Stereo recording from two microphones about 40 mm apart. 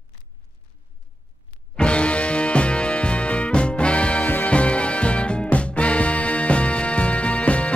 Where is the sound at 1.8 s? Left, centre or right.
Left.